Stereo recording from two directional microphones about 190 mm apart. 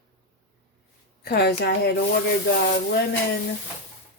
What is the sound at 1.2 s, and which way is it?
Speech, 55° left (ahead or behind).